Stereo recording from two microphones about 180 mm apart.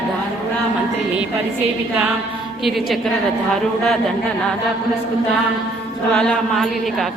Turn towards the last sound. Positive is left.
turn(degrees=5)  # may be behind; listen again after turning